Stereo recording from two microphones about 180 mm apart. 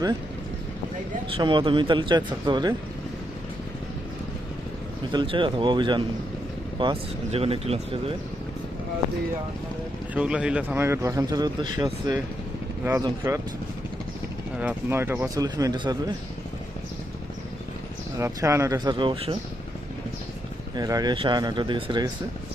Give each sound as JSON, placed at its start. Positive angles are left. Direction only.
{"t": 1.3, "sound": "speech", "side_deg": -25}
{"t": 5.1, "sound": "speech", "side_deg": -30}
{"t": 10.2, "sound": "a man's voice", "side_deg": -5}
{"t": 14.6, "sound": "a man's voice", "side_deg": -10}
{"t": 18.2, "sound": "speech", "side_deg": -15}
{"t": 20.7, "sound": "speech", "side_deg": -20}